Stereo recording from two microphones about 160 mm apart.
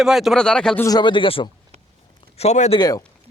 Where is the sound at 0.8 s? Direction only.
25° left (ahead or behind).